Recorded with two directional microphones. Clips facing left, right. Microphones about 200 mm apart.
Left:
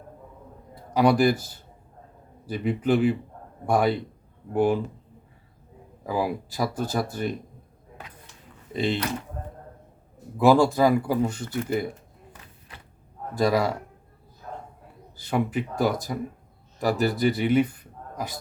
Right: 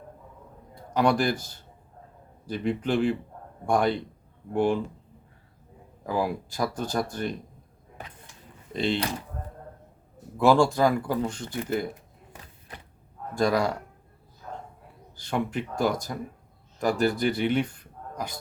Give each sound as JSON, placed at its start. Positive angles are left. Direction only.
{"t": 0.9, "sound": "speech", "side_deg": 5}
{"t": 2.5, "sound": "speech", "side_deg": 5}
{"t": 6.1, "sound": "speech", "side_deg": 5}
{"t": 8.7, "sound": "speech", "side_deg": 5}
{"t": 10.4, "sound": "speech", "side_deg": 5}
{"t": 13.4, "sound": "speech", "side_deg": 5}
{"t": 15.1, "sound": "speech", "side_deg": 5}